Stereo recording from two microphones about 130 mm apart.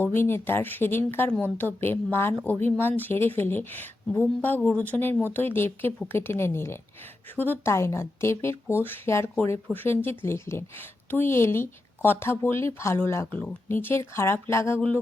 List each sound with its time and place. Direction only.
0.0 s a woman's voice: 15° left (ahead or behind)